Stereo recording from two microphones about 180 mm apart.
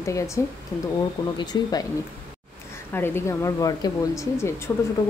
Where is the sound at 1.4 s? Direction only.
20° left (ahead or behind).